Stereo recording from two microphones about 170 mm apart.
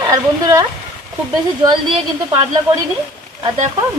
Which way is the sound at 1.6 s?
25° right (ahead or behind).